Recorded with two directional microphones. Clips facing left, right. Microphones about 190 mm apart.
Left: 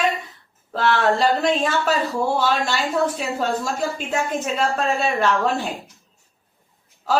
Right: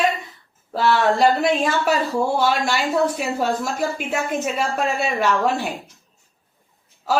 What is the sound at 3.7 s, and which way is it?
A woman's voice, 10° right (ahead or behind).